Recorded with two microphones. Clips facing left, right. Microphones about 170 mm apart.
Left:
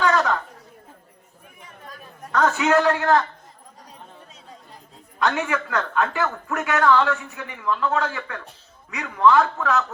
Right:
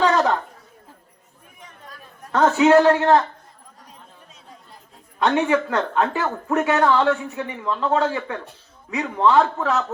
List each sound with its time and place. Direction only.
0.0 s speech: 30° right (ahead or behind)
2.3 s speech: 30° right (ahead or behind)
5.2 s speech: 25° right (ahead or behind)